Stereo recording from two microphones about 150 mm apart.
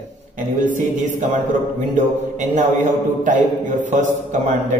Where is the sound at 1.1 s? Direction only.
60° right (ahead or behind).